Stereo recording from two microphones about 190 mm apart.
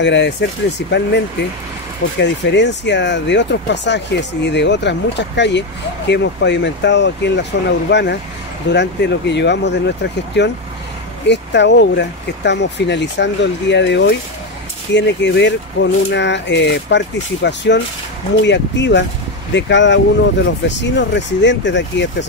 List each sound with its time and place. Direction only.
0.0 s speech: 65° left (ahead or behind)